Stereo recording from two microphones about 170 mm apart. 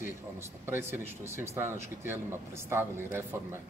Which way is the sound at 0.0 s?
15° right (ahead or behind).